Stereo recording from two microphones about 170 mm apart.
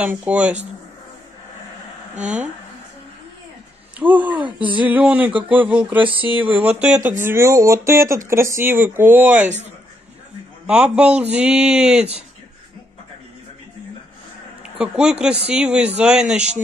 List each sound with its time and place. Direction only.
0.0 s speech: 10° right (ahead or behind)
4.0 s speech: 10° right (ahead or behind)
10.7 s speech: 5° right (ahead or behind)
11.3 s a sound: 5° right (ahead or behind)
11.9 s speech: 40° right (ahead or behind)
14.8 s a sound: 5° right (ahead or behind)